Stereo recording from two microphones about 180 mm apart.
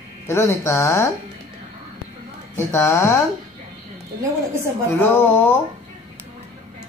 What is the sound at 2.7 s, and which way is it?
Speech, 15° left (ahead or behind).